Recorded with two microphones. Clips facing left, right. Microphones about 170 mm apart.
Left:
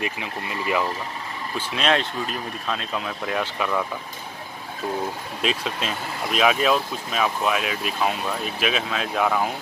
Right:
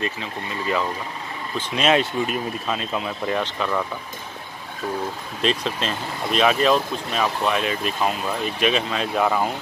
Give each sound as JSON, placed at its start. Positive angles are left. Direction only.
{"t": 0.0, "sound": "speech", "side_deg": 15}
{"t": 1.8, "sound": "speech", "side_deg": -5}
{"t": 5.4, "sound": "speech", "side_deg": 5}